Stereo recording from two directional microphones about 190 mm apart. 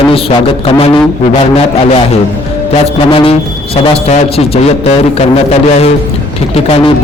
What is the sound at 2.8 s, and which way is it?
A man's voice, 30° left (ahead or behind).